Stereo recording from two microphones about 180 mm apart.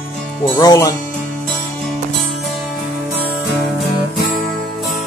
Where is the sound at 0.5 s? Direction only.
20° left (ahead or behind).